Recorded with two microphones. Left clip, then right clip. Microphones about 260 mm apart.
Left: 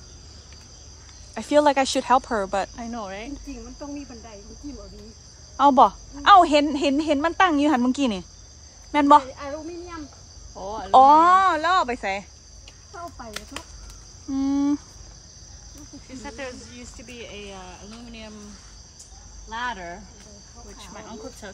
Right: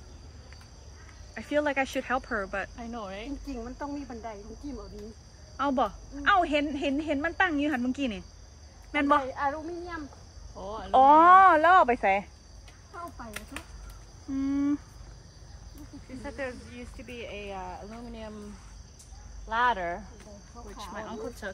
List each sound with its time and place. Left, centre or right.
1.3 s speech: left
2.8 s speech: left
5.6 s speech: left
8.9 s cricket: centre
9.3 s female singing: centre
10.6 s speech: left
10.9 s speech: centre
13.3 s speech: left
14.3 s cricket: centre
16.2 s speech: centre
19.7 s female singing: centre
20.9 s speech: centre